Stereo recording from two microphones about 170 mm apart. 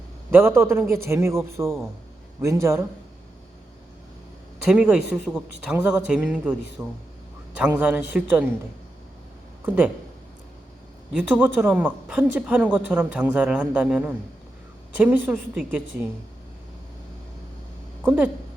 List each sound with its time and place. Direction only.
0.3 s a woman's voice: 15° right (ahead or behind)
4.6 s a man's voice: 5° right (ahead or behind)
9.6 s a woman's voice: 10° right (ahead or behind)
11.2 s a woman's voice: 10° right (ahead or behind)
18.0 s a woman's voice: 5° right (ahead or behind)